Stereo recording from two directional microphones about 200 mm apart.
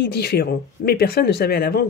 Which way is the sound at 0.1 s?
50° left (ahead or behind).